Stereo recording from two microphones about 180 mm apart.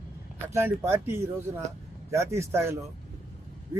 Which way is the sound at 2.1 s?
15° right (ahead or behind).